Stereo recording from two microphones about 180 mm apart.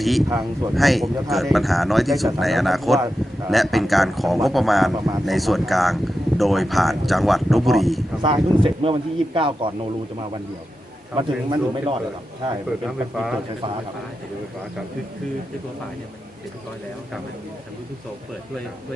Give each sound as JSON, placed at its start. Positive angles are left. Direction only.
{"t": 0.0, "sound": "speech", "side_deg": 0}
{"t": 0.3, "sound": "speech", "side_deg": -20}
{"t": 0.8, "sound": "speech", "side_deg": 0}
{"t": 8.2, "sound": "speech", "side_deg": -30}
{"t": 11.2, "sound": "speech", "side_deg": -25}
{"t": 12.8, "sound": "speech", "side_deg": 0}